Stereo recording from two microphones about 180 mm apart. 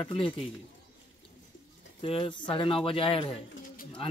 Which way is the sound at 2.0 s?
30° left (ahead or behind).